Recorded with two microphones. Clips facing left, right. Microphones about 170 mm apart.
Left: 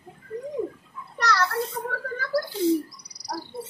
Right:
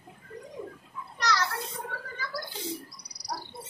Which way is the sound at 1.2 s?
65° left (ahead or behind).